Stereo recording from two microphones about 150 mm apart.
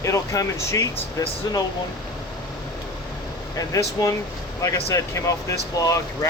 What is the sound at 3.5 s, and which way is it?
Speech, 25° left (ahead or behind).